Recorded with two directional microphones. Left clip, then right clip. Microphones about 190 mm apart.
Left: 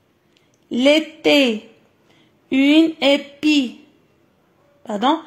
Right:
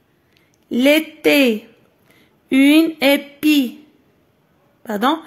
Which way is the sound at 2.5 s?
25° right (ahead or behind).